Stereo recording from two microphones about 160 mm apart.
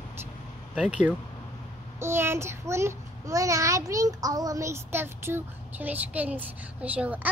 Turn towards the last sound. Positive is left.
turn(degrees=-10)  # may be behind; listen again after turning